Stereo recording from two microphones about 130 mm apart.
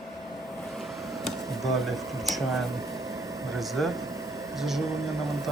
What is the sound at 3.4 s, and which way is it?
Speech, centre (ahead or behind).